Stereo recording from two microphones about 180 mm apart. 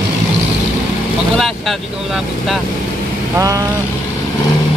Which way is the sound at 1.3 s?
Centre (ahead or behind).